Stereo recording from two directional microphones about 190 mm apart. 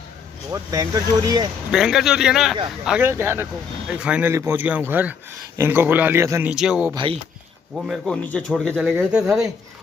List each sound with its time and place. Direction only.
0.5 s speech: 15° right (ahead or behind)
1.7 s speech: centre (ahead or behind)
6.5 s speech: 5° right (ahead or behind)
6.9 s speech: 25° right (ahead or behind)
7.7 s speech: centre (ahead or behind)